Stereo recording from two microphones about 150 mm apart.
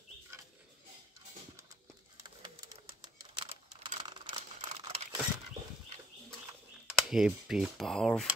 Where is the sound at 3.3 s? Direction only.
30° right (ahead or behind).